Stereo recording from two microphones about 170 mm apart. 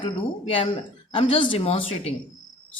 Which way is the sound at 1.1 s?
35° left (ahead or behind).